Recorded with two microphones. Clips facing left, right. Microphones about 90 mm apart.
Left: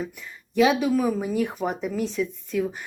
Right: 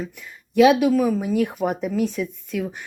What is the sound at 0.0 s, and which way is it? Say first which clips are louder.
Speech: even; centre (ahead or behind).